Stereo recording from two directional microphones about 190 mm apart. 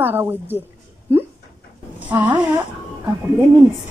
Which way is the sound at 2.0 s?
10° right (ahead or behind).